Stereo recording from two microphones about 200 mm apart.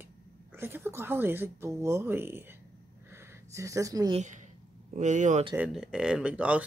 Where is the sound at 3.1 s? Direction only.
15° right (ahead or behind).